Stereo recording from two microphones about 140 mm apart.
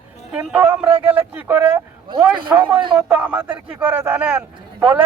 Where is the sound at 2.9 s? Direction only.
5° right (ahead or behind).